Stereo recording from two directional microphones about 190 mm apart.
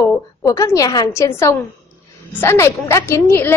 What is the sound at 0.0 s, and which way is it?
A woman's voice, 15° left (ahead or behind).